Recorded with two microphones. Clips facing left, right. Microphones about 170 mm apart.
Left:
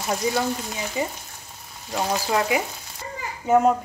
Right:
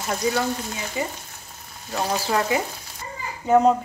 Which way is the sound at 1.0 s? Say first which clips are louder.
Left 1 dB; 20° left (ahead or behind).